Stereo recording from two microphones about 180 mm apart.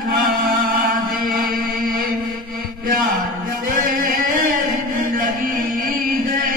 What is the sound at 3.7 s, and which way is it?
Music, 50° right (ahead or behind).